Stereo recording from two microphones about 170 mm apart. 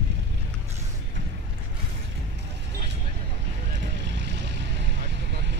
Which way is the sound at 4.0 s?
90° right.